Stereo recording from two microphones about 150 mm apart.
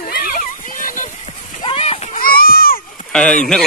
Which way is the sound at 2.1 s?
75° left (ahead or behind).